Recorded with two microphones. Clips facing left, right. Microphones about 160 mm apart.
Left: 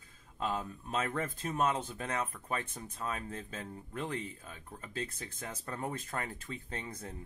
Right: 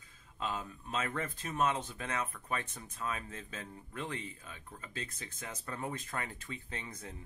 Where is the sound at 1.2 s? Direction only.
30° left (ahead or behind).